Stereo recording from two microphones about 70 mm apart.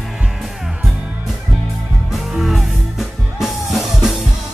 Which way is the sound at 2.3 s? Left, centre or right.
Centre.